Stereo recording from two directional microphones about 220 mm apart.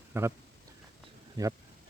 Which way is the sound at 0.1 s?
10° right (ahead or behind).